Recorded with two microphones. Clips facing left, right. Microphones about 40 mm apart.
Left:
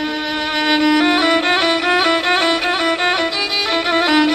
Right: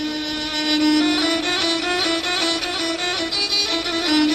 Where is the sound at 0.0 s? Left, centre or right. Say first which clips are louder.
Left 5 dB; left.